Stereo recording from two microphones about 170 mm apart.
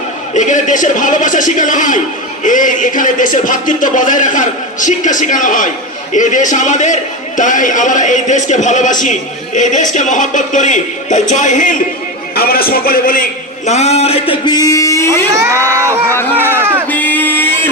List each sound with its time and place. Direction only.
0.3 s music: 45° left (ahead or behind)
12.3 s a man's voice: 60° left (ahead or behind)
13.7 s a man's voice: 40° left (ahead or behind); by 15.2 s 15° left (ahead or behind)
15.4 s speech: 15° right (ahead or behind)
16.9 s a sound: 10° left (ahead or behind)